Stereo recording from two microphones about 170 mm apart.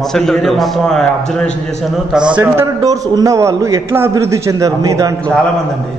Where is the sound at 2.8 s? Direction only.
20° right (ahead or behind).